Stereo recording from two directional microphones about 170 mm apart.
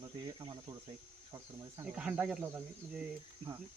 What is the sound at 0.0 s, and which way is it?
Speech, 25° right (ahead or behind).